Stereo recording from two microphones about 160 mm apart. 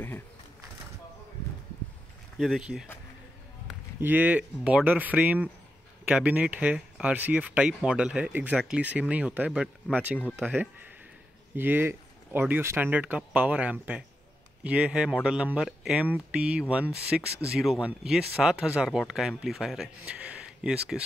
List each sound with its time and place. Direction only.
2.3 s speech: centre (ahead or behind)
4.0 s speech: 10° right (ahead or behind)